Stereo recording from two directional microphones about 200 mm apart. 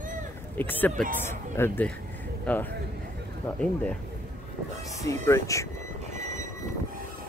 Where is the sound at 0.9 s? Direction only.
40° right (ahead or behind).